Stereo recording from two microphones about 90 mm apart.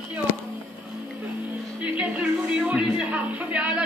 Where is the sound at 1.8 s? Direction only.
15° right (ahead or behind).